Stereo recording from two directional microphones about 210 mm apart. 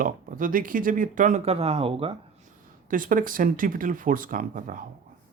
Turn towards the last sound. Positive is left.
turn(degrees=-40)  # may be behind; listen again after turning